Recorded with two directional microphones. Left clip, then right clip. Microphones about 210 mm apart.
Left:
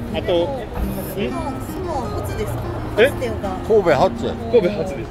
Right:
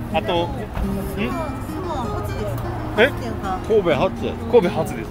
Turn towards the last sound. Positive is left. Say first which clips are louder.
# even
turn(degrees=-45)  # may be behind; listen again after turning